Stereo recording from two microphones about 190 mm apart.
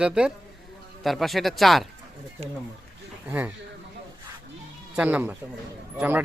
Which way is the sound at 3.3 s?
10° right (ahead or behind).